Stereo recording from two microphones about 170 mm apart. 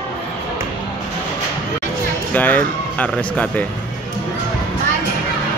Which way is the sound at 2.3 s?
10° left (ahead or behind).